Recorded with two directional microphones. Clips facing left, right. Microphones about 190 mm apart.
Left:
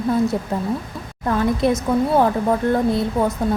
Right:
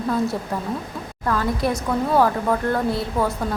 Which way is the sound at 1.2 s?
20° left (ahead or behind).